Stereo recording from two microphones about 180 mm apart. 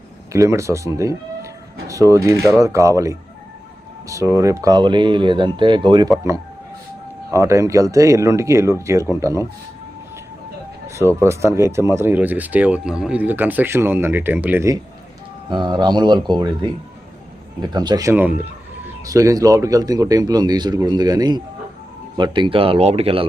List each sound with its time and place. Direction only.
0.3 s speech: 15° right (ahead or behind)
7.3 s speech: 15° right (ahead or behind)
10.8 s a sound: 15° right (ahead or behind)
11.2 s speech: 15° right (ahead or behind)
15.4 s speech: 25° right (ahead or behind)